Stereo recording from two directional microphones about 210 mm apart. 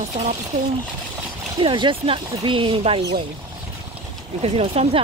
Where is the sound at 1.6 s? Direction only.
25° right (ahead or behind).